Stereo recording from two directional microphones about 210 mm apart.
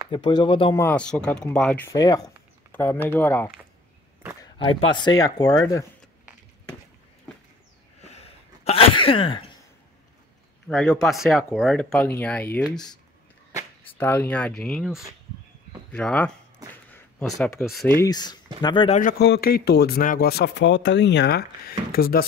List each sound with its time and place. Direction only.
0.1 s speech: 20° left (ahead or behind)
0.7 s speech: 5° left (ahead or behind)
4.4 s speech: 25° left (ahead or behind)
8.0 s sneeze: 30° left (ahead or behind)
10.7 s speech: centre (ahead or behind)
13.9 s speech: 10° left (ahead or behind)
18.0 s speech: 20° left (ahead or behind)
18.9 s a man's voice: 45° left (ahead or behind)
21.6 s a sound: 45° left (ahead or behind)